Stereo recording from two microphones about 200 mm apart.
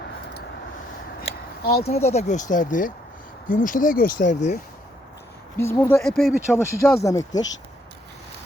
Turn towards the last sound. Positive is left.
turn(degrees=15)  # may be behind; listen again after turning